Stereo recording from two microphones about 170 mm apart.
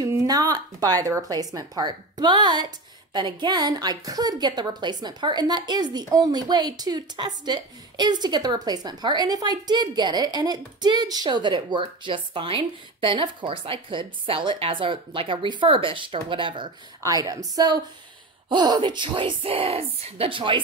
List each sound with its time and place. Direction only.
0.0 s speech: 20° right (ahead or behind)
17.0 s a woman's voice: 20° right (ahead or behind)